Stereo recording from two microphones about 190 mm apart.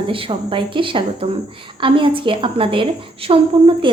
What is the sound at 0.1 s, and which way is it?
Speech, 25° right (ahead or behind).